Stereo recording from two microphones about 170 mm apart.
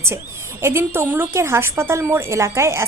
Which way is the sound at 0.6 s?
15° right (ahead or behind).